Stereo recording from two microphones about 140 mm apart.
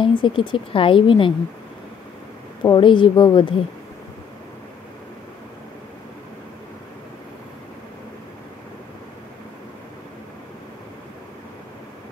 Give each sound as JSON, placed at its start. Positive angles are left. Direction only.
{"t": 0.0, "sound": "a woman's voice", "side_deg": 35}
{"t": 2.6, "sound": "a woman's voice", "side_deg": 35}